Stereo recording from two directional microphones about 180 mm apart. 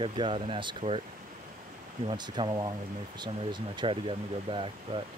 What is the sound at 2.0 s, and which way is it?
Speech, 25° right (ahead or behind).